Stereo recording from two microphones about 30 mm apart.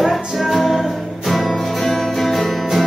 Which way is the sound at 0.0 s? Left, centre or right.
Centre.